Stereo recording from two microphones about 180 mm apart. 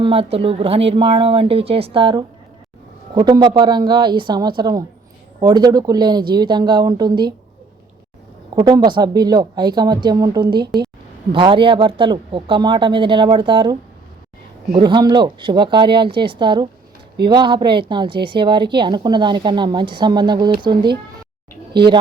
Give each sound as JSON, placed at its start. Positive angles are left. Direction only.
{"t": 0.0, "sound": "a woman's voice", "side_deg": -30}
{"t": 8.5, "sound": "a woman's voice", "side_deg": -25}